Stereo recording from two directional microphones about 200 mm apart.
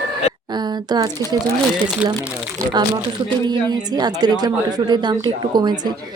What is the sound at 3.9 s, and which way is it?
Speech, 20° right (ahead or behind).